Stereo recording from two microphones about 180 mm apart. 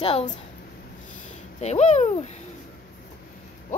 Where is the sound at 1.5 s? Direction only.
40° left (ahead or behind).